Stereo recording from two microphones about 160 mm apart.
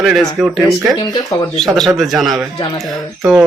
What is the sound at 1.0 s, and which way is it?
Speech, 25° left (ahead or behind).